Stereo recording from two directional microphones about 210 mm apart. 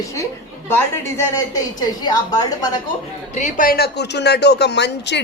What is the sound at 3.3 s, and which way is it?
Speech, 35° left (ahead or behind).